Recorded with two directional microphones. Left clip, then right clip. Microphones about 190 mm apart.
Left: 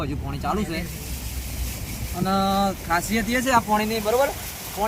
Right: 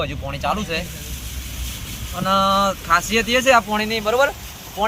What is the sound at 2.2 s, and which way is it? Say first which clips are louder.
Speech: right 5 dB; centre (ahead or behind).